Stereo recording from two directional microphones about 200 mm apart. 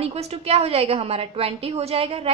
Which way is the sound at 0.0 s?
30° right (ahead or behind).